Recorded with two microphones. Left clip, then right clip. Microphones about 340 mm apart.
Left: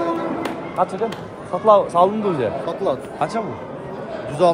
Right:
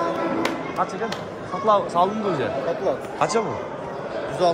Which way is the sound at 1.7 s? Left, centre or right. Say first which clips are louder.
Left 5 dB; centre.